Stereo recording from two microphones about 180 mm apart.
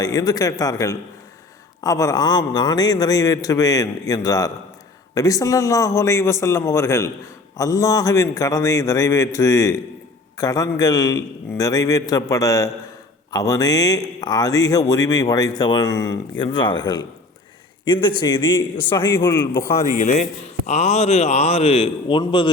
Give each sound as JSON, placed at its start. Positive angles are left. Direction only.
{"t": 0.0, "sound": "a man's voice", "side_deg": 20}
{"t": 18.2, "sound": "a man's voice", "side_deg": 25}
{"t": 20.0, "sound": "a man's voice", "side_deg": 40}